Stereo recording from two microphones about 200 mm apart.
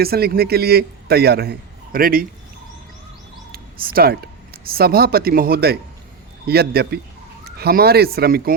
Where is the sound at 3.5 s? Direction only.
45° right (ahead or behind).